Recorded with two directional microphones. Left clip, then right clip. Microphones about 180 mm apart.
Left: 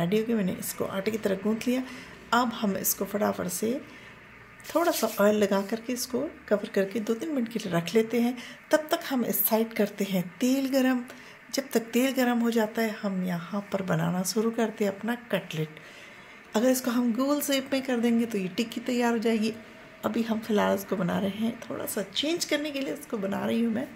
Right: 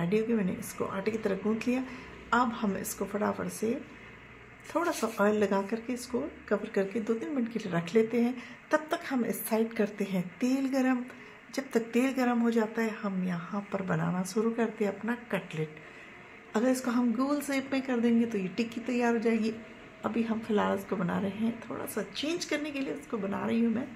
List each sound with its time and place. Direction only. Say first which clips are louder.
0.0 s speech: left 2 dB; 15° left (ahead or behind)
4.7 s speech: left 4 dB; 20° left (ahead or behind)